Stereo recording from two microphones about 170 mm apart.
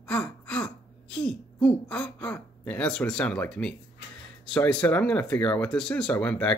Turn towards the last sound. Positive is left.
turn(degrees=10)  # may be behind; listen again after turning